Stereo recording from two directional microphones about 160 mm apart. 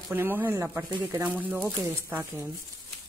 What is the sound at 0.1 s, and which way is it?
Speech, 15° right (ahead or behind).